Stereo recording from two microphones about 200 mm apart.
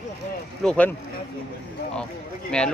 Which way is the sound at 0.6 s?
5° left (ahead or behind).